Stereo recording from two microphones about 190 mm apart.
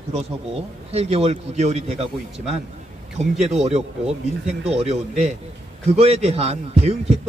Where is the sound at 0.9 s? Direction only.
35° right (ahead or behind).